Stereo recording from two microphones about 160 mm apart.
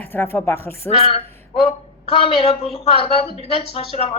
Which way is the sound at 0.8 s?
40° left (ahead or behind).